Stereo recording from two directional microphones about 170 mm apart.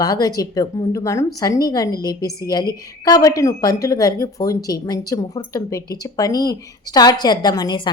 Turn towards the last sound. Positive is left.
turn(degrees=25)  # may be behind; listen again after turning